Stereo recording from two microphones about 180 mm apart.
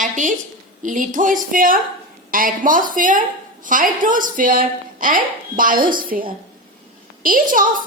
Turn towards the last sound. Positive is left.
turn(degrees=-50)  # may be behind; listen again after turning